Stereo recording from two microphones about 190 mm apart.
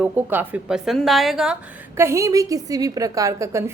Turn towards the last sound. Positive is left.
turn(degrees=-15)  # may be behind; listen again after turning